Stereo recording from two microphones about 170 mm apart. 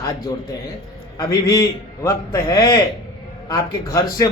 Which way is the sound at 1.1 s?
20° left (ahead or behind).